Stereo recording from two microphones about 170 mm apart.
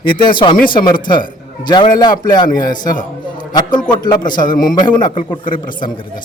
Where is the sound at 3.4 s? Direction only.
25° left (ahead or behind).